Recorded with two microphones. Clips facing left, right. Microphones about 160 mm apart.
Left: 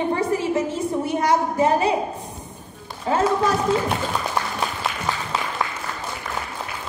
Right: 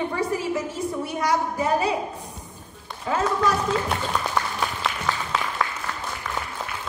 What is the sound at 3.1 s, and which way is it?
Speech, 30° left (ahead or behind).